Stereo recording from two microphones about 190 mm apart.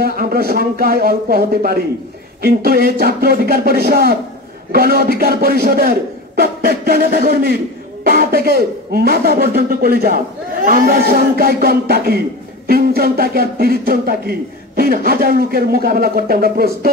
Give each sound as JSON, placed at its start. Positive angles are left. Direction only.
{"t": 0.0, "sound": "a man's voice", "side_deg": -55}